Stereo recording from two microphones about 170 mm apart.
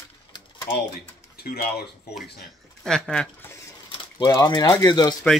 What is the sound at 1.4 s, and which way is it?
Speech, 65° left (ahead or behind).